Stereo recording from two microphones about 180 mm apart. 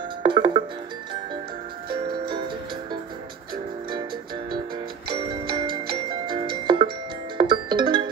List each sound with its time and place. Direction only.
0.2 s music: 25° right (ahead or behind)
1.9 s music: 25° right (ahead or behind)
5.1 s music: 25° right (ahead or behind)